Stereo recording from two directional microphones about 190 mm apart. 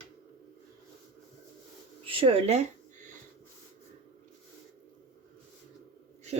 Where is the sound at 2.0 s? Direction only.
30° right (ahead or behind).